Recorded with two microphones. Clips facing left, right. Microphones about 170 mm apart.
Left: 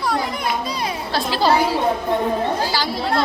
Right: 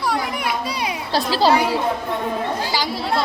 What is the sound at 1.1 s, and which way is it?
Speech, 35° right (ahead or behind).